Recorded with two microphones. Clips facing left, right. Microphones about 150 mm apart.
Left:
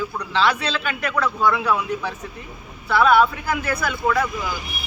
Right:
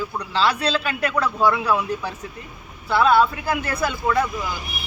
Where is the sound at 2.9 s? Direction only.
30° right (ahead or behind).